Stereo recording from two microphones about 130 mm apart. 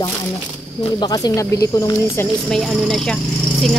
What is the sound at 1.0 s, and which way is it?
Speech, 30° left (ahead or behind).